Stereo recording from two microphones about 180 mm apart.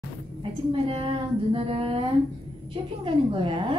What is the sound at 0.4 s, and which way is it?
A woman's voice, 30° right (ahead or behind).